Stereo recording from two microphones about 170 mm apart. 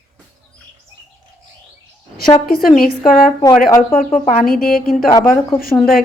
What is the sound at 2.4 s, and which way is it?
A woman's voice, 60° left (ahead or behind).